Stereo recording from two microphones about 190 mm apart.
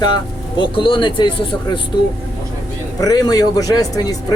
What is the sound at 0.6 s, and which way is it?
Speech, 25° left (ahead or behind).